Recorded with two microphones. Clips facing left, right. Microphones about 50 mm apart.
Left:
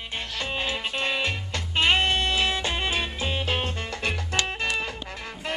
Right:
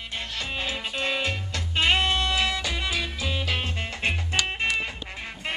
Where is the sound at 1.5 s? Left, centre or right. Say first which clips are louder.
Left 1 dB; left.